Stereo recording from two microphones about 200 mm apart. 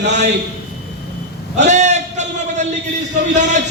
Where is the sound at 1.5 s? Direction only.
35° right (ahead or behind).